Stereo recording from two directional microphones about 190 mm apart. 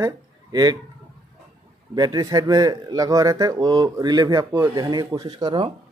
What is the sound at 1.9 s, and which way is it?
Speech, 20° right (ahead or behind).